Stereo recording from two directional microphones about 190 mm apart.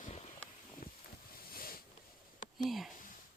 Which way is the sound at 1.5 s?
50° left (ahead or behind).